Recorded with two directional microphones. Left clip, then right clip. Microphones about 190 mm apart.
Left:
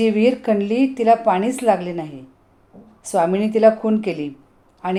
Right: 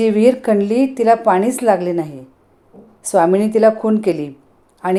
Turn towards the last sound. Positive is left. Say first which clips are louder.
# right 6 dB
turn(degrees=-20)  # may be behind; listen again after turning